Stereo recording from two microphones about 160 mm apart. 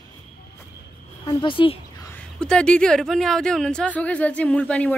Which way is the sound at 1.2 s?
30° left (ahead or behind).